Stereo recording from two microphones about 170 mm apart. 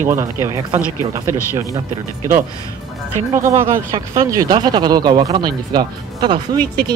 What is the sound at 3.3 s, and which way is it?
Speech, 15° right (ahead or behind).